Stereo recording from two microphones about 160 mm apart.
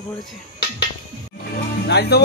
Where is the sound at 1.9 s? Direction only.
90° left.